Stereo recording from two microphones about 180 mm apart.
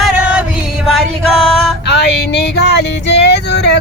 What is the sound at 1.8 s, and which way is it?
Female singing, 70° left (ahead or behind).